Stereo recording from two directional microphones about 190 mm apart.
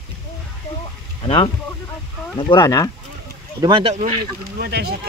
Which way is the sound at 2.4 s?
20° left (ahead or behind).